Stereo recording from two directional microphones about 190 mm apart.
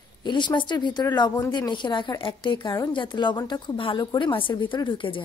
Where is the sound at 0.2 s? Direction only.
25° left (ahead or behind).